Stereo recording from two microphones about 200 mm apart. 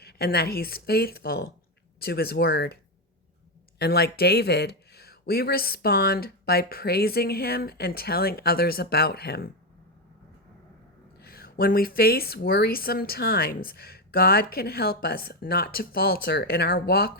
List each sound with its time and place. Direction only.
0.0 s speech: 50° left (ahead or behind)
3.8 s speech: 50° left (ahead or behind)
11.2 s speech: 50° left (ahead or behind)